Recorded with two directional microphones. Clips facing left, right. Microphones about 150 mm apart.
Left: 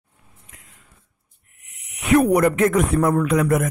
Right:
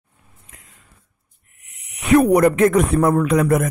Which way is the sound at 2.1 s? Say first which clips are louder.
Right 3 dB; 35° right (ahead or behind).